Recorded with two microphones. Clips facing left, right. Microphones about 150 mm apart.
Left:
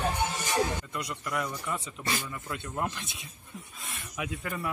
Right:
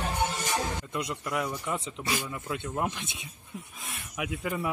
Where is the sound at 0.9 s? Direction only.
15° right (ahead or behind).